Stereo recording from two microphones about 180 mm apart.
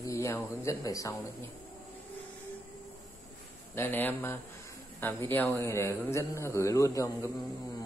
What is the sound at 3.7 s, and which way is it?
A man's voice, 10° left (ahead or behind).